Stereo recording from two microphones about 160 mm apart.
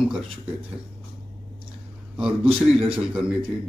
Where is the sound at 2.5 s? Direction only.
35° right (ahead or behind).